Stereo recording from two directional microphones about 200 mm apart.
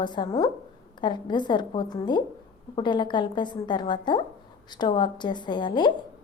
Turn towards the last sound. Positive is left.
turn(degrees=25)  # may be behind; listen again after turning